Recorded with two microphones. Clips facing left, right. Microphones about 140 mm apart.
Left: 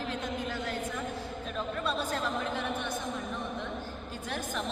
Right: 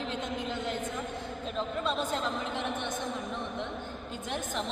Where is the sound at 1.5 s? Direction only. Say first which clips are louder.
Right 1 dB; 20° right (ahead or behind).